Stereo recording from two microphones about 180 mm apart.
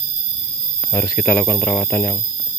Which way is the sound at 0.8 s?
10° left (ahead or behind).